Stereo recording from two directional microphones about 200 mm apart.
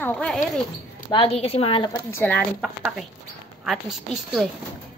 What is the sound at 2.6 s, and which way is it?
Speech, 5° right (ahead or behind).